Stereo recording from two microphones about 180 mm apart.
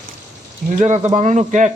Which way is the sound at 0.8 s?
40° right (ahead or behind).